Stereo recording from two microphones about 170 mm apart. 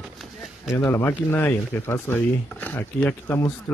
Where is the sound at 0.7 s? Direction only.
15° left (ahead or behind).